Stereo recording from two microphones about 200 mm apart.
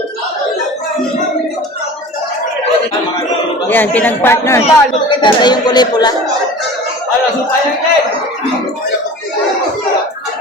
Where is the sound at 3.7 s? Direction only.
10° left (ahead or behind).